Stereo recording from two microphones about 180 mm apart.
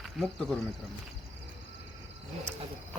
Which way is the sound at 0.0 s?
Centre (ahead or behind).